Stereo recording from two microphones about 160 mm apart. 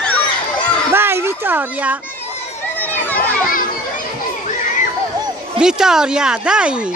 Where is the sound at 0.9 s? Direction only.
15° right (ahead or behind).